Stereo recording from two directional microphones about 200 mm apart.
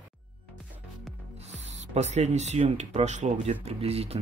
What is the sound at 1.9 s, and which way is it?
Speech, 35° right (ahead or behind).